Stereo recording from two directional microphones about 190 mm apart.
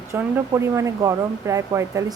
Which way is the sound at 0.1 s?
15° right (ahead or behind).